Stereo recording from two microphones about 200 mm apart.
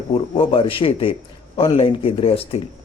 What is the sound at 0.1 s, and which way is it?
A man's voice, 25° left (ahead or behind).